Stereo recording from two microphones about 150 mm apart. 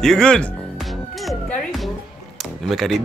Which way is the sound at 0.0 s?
5° left (ahead or behind).